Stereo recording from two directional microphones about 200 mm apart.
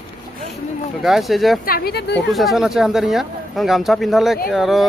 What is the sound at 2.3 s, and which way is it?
Speech, centre (ahead or behind).